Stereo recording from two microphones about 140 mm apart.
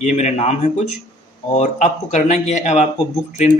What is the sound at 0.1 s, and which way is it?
A man's voice, 50° left (ahead or behind).